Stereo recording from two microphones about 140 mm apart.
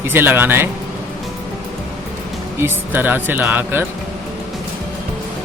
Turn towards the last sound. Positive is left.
turn(degrees=-15)  # may be behind; listen again after turning